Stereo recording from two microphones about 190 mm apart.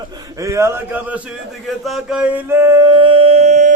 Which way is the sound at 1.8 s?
Centre (ahead or behind).